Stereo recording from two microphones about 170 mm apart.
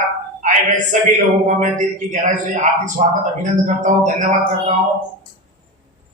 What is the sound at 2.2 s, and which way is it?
Speech, 50° right (ahead or behind).